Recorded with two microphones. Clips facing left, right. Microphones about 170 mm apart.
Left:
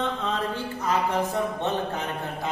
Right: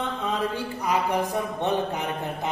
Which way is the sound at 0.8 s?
15° right (ahead or behind).